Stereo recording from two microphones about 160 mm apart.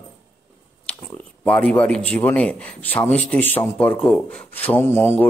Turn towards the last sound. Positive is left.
turn(degrees=15)  # may be behind; listen again after turning